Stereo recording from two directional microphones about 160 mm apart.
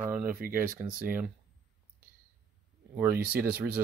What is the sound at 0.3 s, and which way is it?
Speech, 60° right (ahead or behind).